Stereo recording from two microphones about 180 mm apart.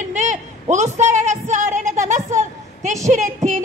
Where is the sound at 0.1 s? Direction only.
40° right (ahead or behind).